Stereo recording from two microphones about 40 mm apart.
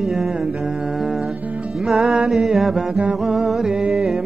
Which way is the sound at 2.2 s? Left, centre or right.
Centre.